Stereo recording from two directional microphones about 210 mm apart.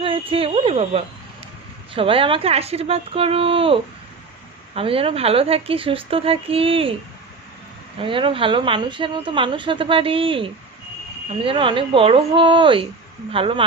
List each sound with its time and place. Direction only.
0.0 s speech: 25° right (ahead or behind)
7.9 s speech: 25° right (ahead or behind)